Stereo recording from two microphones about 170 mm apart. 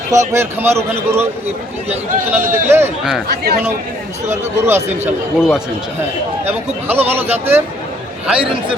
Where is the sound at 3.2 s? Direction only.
70° right (ahead or behind).